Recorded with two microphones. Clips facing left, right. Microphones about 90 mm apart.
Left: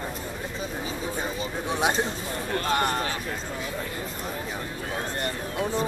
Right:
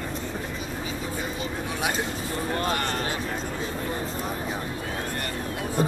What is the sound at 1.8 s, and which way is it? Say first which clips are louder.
Speech: left 4 dB; 30° left (ahead or behind).